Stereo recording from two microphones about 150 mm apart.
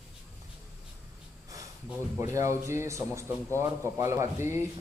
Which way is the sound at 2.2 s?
20° right (ahead or behind).